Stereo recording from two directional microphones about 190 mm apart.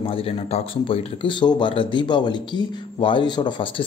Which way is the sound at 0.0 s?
30° left (ahead or behind).